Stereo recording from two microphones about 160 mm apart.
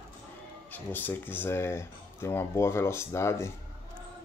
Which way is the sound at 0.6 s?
10° left (ahead or behind).